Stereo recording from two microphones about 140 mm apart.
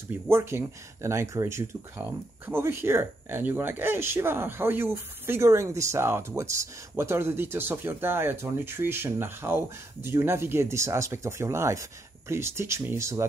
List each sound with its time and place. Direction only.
0.3 s speech: 20° right (ahead or behind)